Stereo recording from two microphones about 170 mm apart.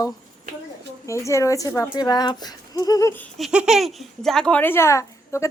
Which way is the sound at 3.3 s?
5° right (ahead or behind).